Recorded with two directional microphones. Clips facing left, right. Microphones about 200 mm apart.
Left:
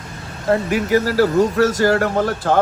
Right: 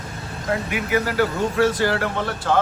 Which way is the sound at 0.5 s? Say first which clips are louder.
Left 6 dB; 35° left (ahead or behind).